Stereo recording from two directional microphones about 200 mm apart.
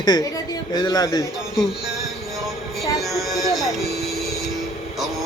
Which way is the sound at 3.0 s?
Centre (ahead or behind).